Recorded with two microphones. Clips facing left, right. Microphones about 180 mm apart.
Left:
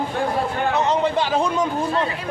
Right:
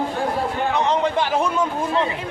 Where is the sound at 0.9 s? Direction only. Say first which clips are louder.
Even; 10° left (ahead or behind).